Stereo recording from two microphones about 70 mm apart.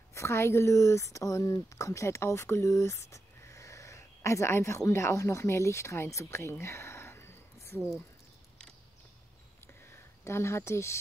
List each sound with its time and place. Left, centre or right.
0.1 s speech: left
6.6 s a sound: left
10.2 s speech: left